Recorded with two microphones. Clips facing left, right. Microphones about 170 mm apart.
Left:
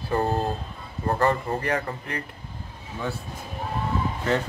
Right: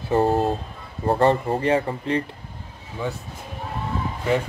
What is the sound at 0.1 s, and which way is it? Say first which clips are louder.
Speech: right 5 dB; 25° right (ahead or behind).